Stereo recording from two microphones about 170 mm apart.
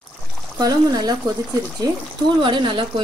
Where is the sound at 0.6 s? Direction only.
25° right (ahead or behind).